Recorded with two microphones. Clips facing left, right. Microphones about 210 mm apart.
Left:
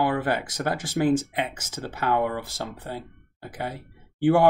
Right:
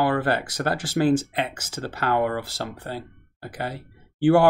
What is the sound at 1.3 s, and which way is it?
Speech, 75° right (ahead or behind).